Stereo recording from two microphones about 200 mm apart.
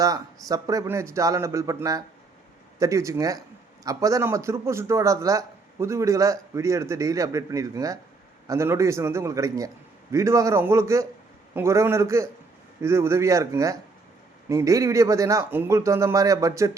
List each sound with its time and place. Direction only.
0.0 s speech: 20° right (ahead or behind)